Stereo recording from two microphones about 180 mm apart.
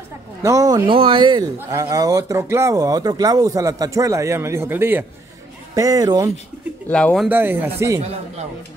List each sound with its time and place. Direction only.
0.4 s speech: 20° right (ahead or behind)
6.9 s speech: 5° left (ahead or behind)
7.2 s speech: 10° right (ahead or behind)